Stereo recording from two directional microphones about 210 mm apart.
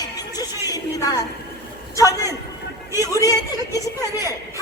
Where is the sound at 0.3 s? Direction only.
20° left (ahead or behind).